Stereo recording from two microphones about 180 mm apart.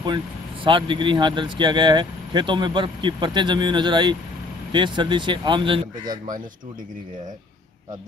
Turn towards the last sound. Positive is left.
turn(degrees=-25)  # may be behind; listen again after turning